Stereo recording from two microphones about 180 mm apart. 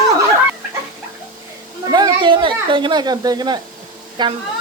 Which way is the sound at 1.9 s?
25° right (ahead or behind).